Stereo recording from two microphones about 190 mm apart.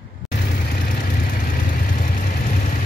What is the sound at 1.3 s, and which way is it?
Vehicle, 45° left (ahead or behind).